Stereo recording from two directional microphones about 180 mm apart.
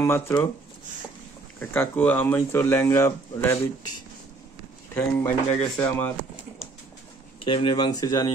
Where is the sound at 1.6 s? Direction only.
10° left (ahead or behind).